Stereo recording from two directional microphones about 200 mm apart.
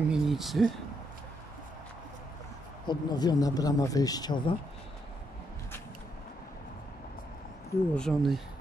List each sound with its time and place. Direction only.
0.1 s speech: centre (ahead or behind)
2.9 s speech: 20° left (ahead or behind)
7.9 s speech: 5° left (ahead or behind)